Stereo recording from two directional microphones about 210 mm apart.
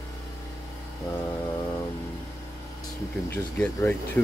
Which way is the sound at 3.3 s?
10° left (ahead or behind).